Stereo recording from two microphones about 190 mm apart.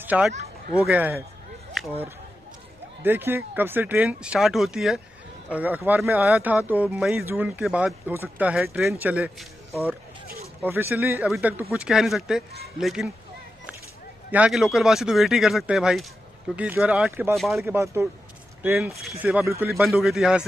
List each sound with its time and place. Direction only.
0.0 s speech: 10° right (ahead or behind)
1.8 s a sound: centre (ahead or behind)
3.0 s a man's voice: 10° right (ahead or behind)
14.3 s speech: 5° right (ahead or behind)
17.7 s speech: 15° right (ahead or behind)
19.4 s speech: 15° right (ahead or behind)
19.8 s speech: centre (ahead or behind)